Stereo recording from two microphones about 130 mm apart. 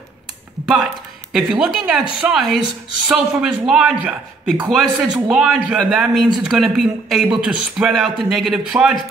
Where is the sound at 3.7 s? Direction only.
5° right (ahead or behind).